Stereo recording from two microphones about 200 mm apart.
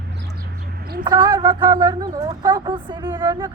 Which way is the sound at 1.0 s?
20° right (ahead or behind).